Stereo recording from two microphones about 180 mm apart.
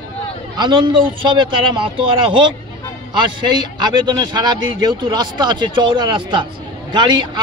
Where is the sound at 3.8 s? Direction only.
25° right (ahead or behind).